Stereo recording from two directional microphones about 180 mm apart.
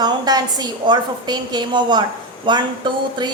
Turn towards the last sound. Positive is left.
turn(degrees=-25)  # may be behind; listen again after turning